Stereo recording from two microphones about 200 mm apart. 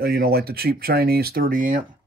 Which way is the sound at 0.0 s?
50° right (ahead or behind).